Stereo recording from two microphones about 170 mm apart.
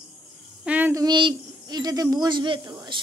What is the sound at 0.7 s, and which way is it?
Child singing, 10° right (ahead or behind).